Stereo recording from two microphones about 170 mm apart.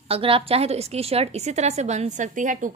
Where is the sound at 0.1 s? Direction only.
35° right (ahead or behind).